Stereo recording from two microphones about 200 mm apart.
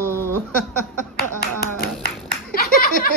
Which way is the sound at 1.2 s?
50° left (ahead or behind).